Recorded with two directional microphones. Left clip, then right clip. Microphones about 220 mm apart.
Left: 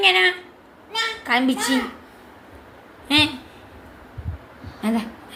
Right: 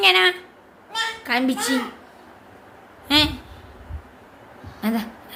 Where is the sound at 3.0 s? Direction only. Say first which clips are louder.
Even; 15° right (ahead or behind).